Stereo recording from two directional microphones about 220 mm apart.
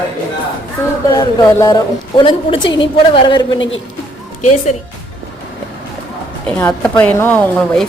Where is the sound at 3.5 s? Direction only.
60° left (ahead or behind).